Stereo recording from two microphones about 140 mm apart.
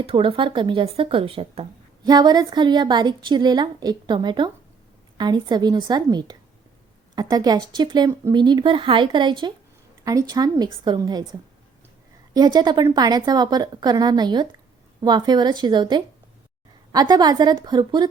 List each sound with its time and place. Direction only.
0.0 s a woman's voice: 40° right (ahead or behind)
2.0 s a woman's voice: 30° right (ahead or behind)
12.3 s a woman's voice: 30° right (ahead or behind)